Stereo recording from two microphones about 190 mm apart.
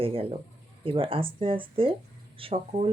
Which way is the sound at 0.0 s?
30° right (ahead or behind).